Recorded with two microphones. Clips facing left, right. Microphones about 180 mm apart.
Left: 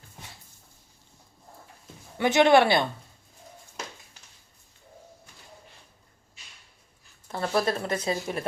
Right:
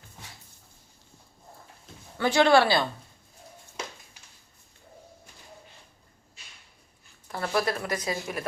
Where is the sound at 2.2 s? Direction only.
20° left (ahead or behind).